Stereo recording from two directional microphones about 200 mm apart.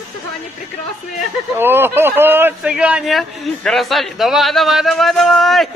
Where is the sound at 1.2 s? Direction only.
10° right (ahead or behind).